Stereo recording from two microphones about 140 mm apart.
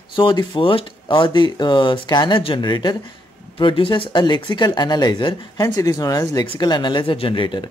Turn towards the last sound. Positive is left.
turn(degrees=35)  # may be behind; listen again after turning